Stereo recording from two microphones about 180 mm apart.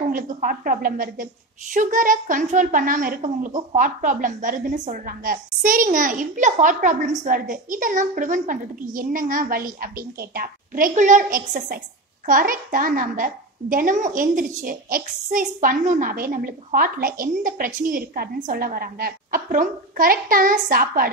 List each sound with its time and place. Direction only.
0.1 s a woman's voice: 50° right (ahead or behind)